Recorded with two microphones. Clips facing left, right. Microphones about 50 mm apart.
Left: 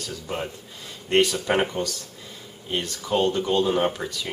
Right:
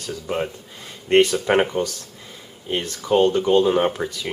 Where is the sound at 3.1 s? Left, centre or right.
Right.